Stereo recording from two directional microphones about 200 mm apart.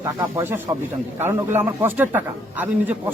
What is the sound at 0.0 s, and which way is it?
A man's voice, 15° right (ahead or behind).